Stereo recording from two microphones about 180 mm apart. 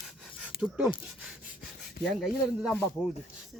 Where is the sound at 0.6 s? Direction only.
5° right (ahead or behind).